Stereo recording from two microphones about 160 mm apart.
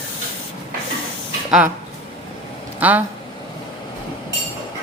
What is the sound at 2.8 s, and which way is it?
Speech, 10° right (ahead or behind).